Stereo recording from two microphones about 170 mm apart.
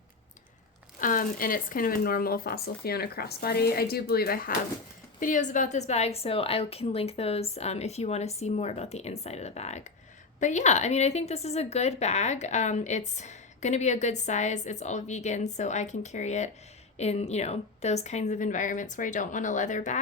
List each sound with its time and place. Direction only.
1.0 s speech: 55° left (ahead or behind)
5.2 s a woman's voice: 50° left (ahead or behind)